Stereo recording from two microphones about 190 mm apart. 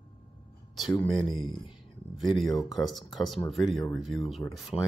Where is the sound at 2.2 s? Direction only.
Centre (ahead or behind).